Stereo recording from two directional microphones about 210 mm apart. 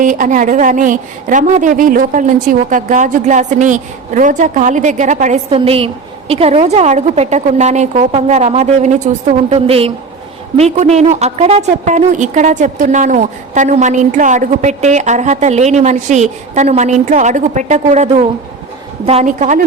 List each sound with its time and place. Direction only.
0.0 s a woman's voice: 40° right (ahead or behind)